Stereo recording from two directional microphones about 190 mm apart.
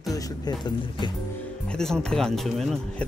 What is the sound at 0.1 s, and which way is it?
Speech, 20° left (ahead or behind).